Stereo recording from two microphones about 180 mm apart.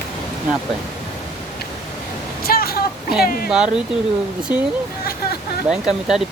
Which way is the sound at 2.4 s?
55° left (ahead or behind).